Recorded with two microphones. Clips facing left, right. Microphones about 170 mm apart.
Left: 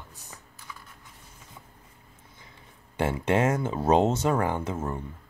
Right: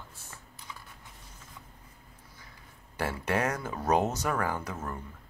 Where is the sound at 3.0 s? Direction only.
25° left (ahead or behind).